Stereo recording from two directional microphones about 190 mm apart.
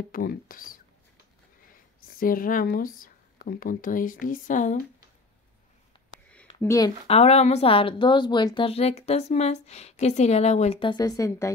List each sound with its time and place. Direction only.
0.1 s speech: 50° left (ahead or behind)
2.1 s speech: 45° left (ahead or behind)
6.6 s speech: 15° left (ahead or behind)
7.1 s speech: 35° left (ahead or behind); by 11.5 s 15° left (ahead or behind)